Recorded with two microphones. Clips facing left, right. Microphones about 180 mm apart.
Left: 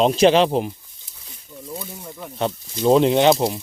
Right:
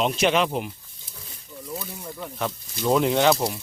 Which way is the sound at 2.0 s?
Centre (ahead or behind).